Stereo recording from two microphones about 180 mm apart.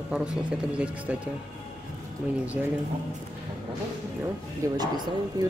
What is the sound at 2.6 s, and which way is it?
Speech, 10° right (ahead or behind).